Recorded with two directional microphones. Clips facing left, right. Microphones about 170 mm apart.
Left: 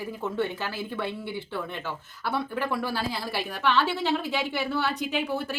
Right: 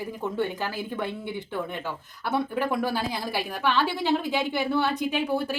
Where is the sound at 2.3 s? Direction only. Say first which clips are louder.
Right 3 dB; 20° right (ahead or behind).